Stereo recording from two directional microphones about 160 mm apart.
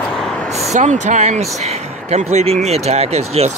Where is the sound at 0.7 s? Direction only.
50° right (ahead or behind).